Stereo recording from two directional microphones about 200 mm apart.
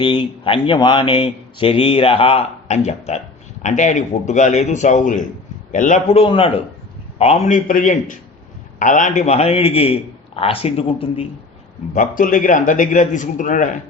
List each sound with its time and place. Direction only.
0.4 s a man's voice: 25° left (ahead or behind)
11.9 s a man's voice: 40° left (ahead or behind)